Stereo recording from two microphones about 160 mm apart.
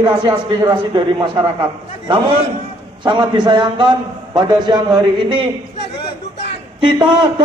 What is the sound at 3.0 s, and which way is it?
A man's voice, 30° right (ahead or behind).